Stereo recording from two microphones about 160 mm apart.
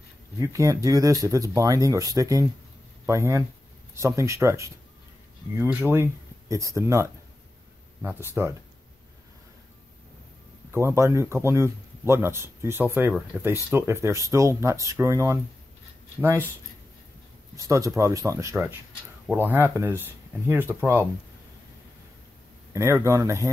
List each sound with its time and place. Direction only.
0.4 s speech: 20° right (ahead or behind)
10.7 s speech: 15° right (ahead or behind)
17.6 s speech: 20° right (ahead or behind)
22.7 s speech: 20° right (ahead or behind)